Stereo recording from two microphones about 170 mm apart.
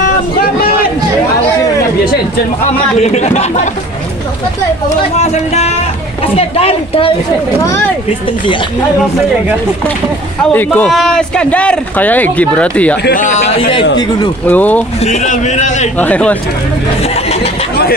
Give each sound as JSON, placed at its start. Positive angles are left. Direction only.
{"t": 3.0, "sound": "speech", "side_deg": 40}
{"t": 5.2, "sound": "speech", "side_deg": 40}
{"t": 10.5, "sound": "speech", "side_deg": 10}
{"t": 13.0, "sound": "a man's voice", "side_deg": 50}
{"t": 14.5, "sound": "speech", "side_deg": 10}
{"t": 15.0, "sound": "a man's voice", "side_deg": 40}
{"t": 16.0, "sound": "speech", "side_deg": 10}
{"t": 17.0, "sound": "a sound", "side_deg": 35}